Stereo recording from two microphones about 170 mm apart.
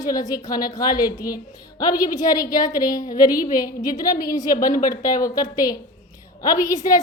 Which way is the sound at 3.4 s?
55° left (ahead or behind).